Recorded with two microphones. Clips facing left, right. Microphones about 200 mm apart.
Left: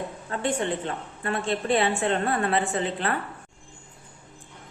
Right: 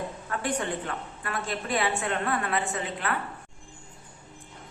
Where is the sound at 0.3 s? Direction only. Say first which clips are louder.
Left 4 dB; 25° left (ahead or behind).